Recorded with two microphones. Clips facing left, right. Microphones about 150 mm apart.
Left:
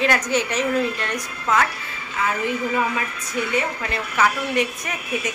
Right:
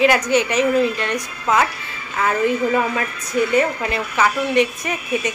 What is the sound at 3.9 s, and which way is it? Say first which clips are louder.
A woman's voice: even; centre (ahead or behind).